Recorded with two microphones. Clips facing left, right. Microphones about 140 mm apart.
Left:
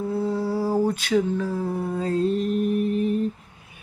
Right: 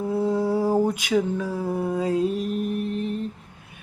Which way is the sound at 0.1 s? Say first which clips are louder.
Right 4 dB; 20° right (ahead or behind).